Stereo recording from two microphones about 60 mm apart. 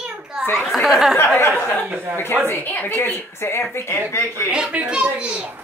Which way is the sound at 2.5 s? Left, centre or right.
Left.